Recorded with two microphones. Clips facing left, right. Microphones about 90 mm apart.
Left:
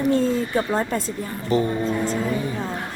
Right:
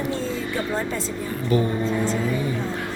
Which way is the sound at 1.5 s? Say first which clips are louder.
Left 1 dB; 30° left (ahead or behind).